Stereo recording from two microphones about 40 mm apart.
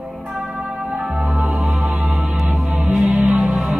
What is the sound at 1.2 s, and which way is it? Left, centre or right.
Music, right.